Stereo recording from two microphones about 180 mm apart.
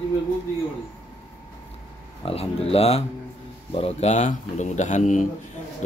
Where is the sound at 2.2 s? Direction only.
30° left (ahead or behind).